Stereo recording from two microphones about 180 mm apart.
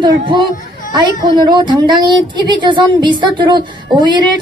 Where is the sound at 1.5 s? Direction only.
25° right (ahead or behind).